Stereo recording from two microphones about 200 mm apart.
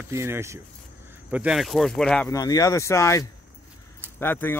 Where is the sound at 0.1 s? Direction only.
15° right (ahead or behind); by 2.2 s 5° left (ahead or behind).